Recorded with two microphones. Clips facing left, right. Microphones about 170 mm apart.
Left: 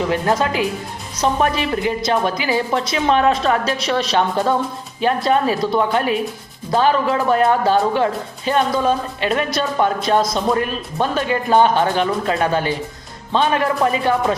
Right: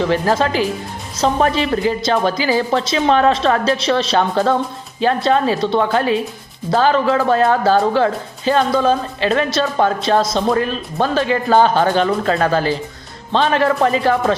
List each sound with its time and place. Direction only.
0.1 s speech: 30° right (ahead or behind)